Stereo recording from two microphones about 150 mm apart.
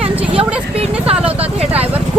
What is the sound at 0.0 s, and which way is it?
Vehicle, 40° right (ahead or behind).